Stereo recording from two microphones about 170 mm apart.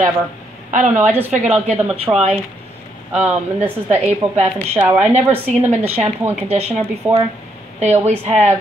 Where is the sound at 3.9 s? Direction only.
40° right (ahead or behind).